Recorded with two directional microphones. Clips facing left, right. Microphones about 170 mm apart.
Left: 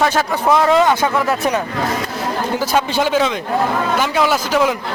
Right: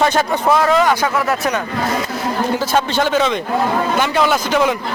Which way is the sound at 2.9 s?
10° left (ahead or behind).